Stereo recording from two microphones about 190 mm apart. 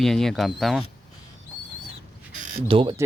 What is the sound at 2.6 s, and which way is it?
Speech, 25° right (ahead or behind).